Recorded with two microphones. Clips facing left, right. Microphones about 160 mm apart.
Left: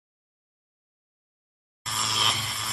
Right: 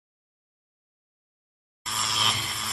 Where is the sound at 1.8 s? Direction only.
Centre (ahead or behind).